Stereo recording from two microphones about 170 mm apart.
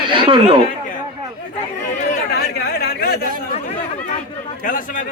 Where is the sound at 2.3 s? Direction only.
70° left (ahead or behind).